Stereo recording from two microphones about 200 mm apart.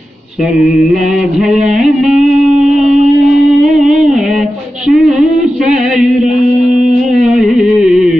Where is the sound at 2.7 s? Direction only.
35° right (ahead or behind).